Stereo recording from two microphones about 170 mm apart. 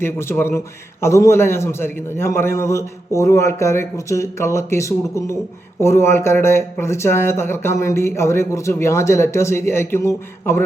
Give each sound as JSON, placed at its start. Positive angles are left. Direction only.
{"t": 0.0, "sound": "speech", "side_deg": 15}